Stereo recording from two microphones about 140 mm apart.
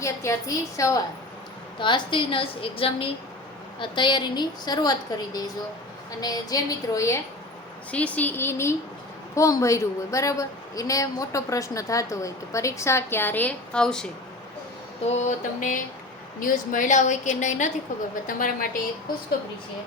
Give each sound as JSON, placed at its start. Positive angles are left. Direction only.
{"t": 0.0, "sound": "a woman's voice", "side_deg": 20}
{"t": 1.8, "sound": "a woman's voice", "side_deg": 35}
{"t": 7.9, "sound": "a woman's voice", "side_deg": 10}
{"t": 15.1, "sound": "a woman's voice", "side_deg": 55}
{"t": 18.3, "sound": "a woman's voice", "side_deg": 70}